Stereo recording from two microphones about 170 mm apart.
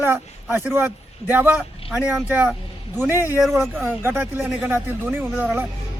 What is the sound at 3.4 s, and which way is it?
Speech, centre (ahead or behind).